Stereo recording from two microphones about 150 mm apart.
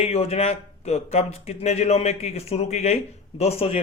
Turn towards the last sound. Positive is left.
turn(degrees=45)  # may be behind; listen again after turning